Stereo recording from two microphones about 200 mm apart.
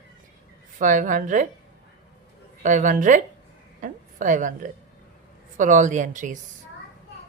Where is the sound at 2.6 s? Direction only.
40° right (ahead or behind).